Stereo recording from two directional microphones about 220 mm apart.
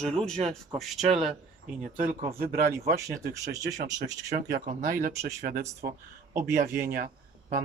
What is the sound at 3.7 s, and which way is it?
Speech, 35° right (ahead or behind).